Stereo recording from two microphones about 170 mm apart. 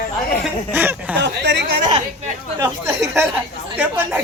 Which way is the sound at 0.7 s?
10° right (ahead or behind).